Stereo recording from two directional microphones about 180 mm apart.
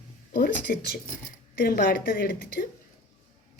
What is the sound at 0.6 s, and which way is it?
A woman's voice, 60° left (ahead or behind).